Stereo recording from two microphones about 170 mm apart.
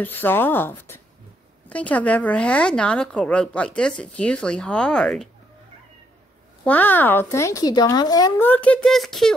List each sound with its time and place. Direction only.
0.0 s speech: 10° left (ahead or behind)
6.6 s speech: 10° left (ahead or behind)
8.4 s speech: 10° left (ahead or behind)